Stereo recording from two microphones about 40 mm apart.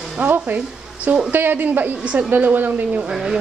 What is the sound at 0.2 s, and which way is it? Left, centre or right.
Speech, right.